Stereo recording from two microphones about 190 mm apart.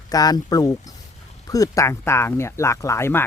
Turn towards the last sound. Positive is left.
turn(degrees=10)  # may be behind; listen again after turning